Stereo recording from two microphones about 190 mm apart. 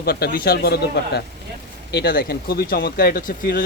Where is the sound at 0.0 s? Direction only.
55° left (ahead or behind).